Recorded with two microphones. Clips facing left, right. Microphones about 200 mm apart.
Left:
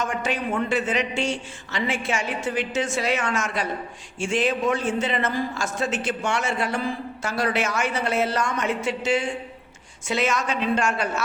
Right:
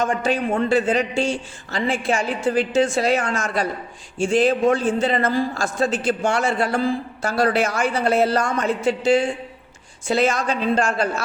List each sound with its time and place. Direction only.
0.0 s a man's voice: 35° right (ahead or behind)